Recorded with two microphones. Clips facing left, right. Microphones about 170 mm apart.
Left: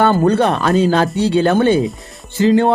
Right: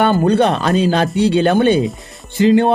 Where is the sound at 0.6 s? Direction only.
20° right (ahead or behind).